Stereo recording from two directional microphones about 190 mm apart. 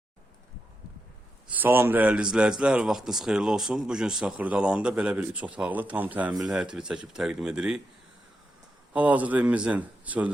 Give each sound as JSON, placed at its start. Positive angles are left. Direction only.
{"t": 1.5, "sound": "a man's voice", "side_deg": -10}
{"t": 8.9, "sound": "speech", "side_deg": -10}